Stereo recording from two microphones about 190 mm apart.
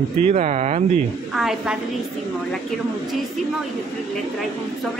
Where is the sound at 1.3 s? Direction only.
Centre (ahead or behind).